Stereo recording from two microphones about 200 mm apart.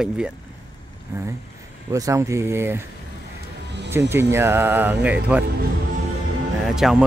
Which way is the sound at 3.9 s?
10° right (ahead or behind).